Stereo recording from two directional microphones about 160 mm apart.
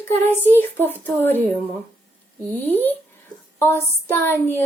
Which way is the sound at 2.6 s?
10° left (ahead or behind).